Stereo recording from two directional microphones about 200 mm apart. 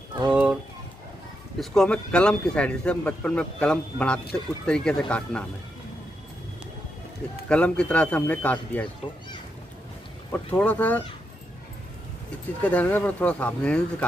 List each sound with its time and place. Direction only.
0.3 s a sound: 5° right (ahead or behind)
1.6 s speech: 5° left (ahead or behind)
7.4 s speech: 5° left (ahead or behind)
9.0 s a child's voice: 25° left (ahead or behind)
10.3 s speech: 10° left (ahead or behind)
12.6 s speech: 10° left (ahead or behind)